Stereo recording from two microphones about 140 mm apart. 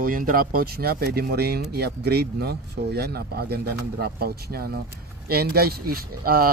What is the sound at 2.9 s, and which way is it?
Speech, 90° right.